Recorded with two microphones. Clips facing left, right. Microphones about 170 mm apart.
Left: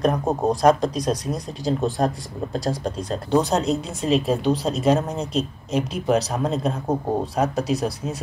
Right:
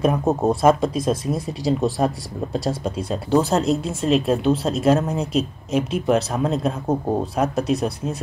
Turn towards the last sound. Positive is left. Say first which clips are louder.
# right 1 dB
turn(degrees=0)  # may be behind; listen again after turning